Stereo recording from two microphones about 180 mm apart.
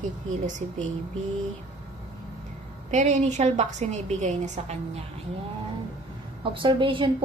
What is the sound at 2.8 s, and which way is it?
A woman's voice, 40° right (ahead or behind).